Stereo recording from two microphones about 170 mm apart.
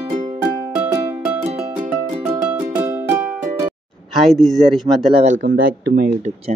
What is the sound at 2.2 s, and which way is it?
Music, 10° right (ahead or behind).